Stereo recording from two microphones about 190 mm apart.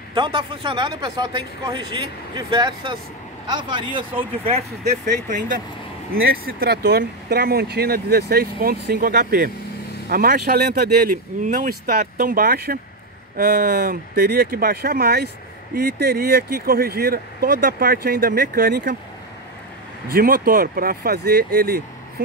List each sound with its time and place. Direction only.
0.1 s speech: 25° right (ahead or behind); by 18.9 s 50° right (ahead or behind)
20.1 s speech: 50° right (ahead or behind)